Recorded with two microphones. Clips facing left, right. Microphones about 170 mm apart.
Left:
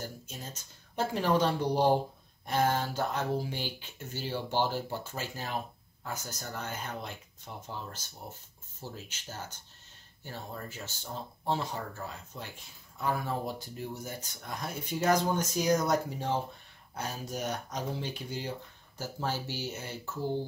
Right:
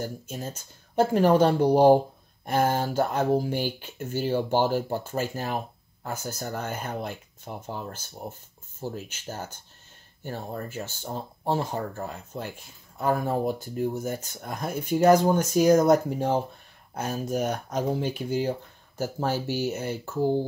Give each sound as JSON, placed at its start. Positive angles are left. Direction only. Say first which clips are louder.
{"t": 0.0, "sound": "speech", "louder": "right 9 dB", "side_deg": -50}